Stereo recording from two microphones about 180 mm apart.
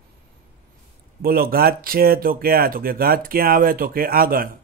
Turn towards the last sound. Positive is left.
turn(degrees=-55)  # may be behind; listen again after turning